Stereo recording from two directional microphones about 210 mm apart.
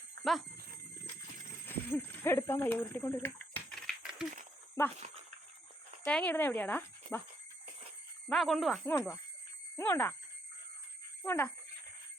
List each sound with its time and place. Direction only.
1.6 s speech: 10° left (ahead or behind)
4.9 s speech: 30° right (ahead or behind)
6.1 s speech: 5° left (ahead or behind)
8.3 s speech: centre (ahead or behind)
11.2 s speech: 10° left (ahead or behind)